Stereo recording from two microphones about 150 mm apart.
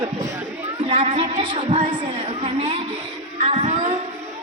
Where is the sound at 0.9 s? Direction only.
50° right (ahead or behind).